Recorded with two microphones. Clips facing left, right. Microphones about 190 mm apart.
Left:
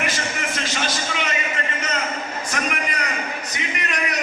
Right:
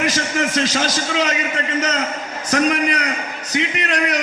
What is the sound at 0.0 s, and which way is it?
A man's voice, 90° right.